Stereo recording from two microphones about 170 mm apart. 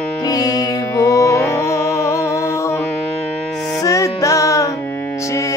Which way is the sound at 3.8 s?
20° left (ahead or behind).